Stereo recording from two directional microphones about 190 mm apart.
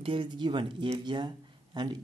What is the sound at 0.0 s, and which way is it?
Speech, 25° right (ahead or behind).